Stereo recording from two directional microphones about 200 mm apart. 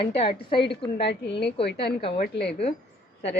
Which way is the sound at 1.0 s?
55° left (ahead or behind).